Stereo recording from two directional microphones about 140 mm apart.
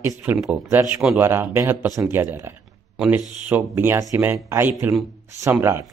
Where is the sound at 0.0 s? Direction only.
15° right (ahead or behind).